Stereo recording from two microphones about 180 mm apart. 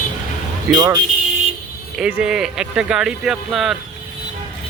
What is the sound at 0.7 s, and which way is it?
Speech, 25° right (ahead or behind).